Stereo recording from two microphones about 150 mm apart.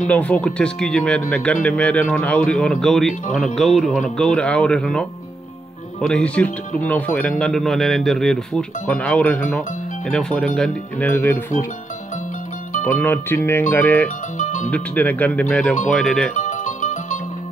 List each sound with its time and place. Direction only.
0.1 s speech: 10° left (ahead or behind)
11.1 s speech: 15° left (ahead or behind)
12.8 s speech: 15° left (ahead or behind)
14.4 s music: 55° left (ahead or behind)
14.7 s speech: 10° left (ahead or behind)
16.3 s music: 55° left (ahead or behind)